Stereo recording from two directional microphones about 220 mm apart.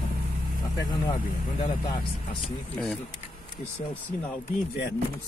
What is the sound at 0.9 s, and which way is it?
Speech, 20° left (ahead or behind).